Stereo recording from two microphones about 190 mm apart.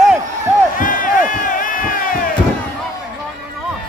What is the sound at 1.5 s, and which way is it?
Crowd, 45° left (ahead or behind).